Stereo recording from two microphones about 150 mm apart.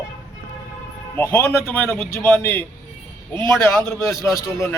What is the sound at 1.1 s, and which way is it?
A man's voice, 15° left (ahead or behind).